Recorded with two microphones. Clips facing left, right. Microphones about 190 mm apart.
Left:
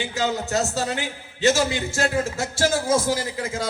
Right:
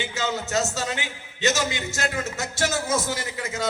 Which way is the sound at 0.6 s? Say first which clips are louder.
Left 3 dB; 35° left (ahead or behind).